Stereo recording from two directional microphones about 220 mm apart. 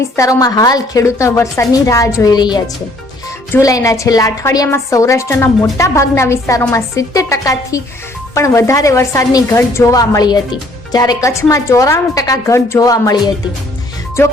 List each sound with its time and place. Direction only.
0.2 s a woman's voice: 15° left (ahead or behind)